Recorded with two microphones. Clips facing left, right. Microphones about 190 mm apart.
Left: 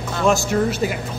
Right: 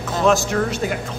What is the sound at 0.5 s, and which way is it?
Speech, 15° left (ahead or behind).